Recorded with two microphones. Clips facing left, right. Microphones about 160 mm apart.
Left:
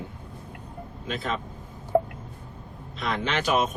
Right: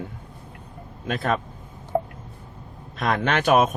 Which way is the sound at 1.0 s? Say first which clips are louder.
Right 6 dB; 55° right (ahead or behind).